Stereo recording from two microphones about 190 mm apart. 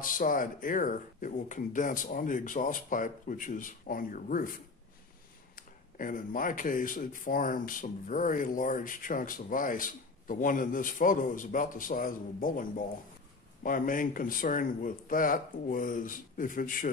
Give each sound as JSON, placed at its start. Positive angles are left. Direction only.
{"t": 0.0, "sound": "speech", "side_deg": 45}
{"t": 5.6, "sound": "speech", "side_deg": 45}